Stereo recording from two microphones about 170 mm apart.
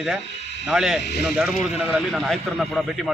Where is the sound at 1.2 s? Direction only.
Centre (ahead or behind).